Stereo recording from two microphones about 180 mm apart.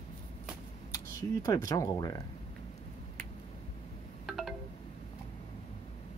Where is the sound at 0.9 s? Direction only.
20° left (ahead or behind).